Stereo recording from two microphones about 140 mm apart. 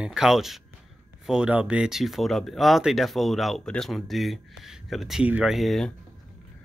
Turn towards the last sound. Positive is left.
turn(degrees=0)  # may be behind; listen again after turning